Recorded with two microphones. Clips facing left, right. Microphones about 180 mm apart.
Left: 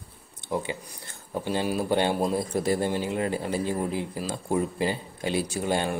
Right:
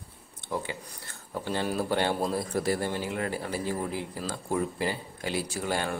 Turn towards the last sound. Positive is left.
turn(degrees=20)  # may be behind; listen again after turning